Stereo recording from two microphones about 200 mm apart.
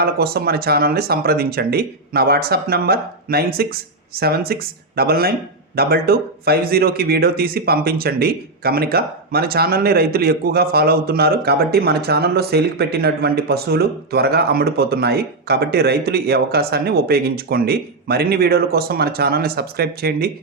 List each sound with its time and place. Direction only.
0.0 s a man's voice: 50° right (ahead or behind)